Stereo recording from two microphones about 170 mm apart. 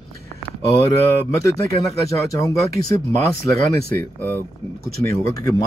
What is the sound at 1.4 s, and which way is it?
Speech, 20° left (ahead or behind).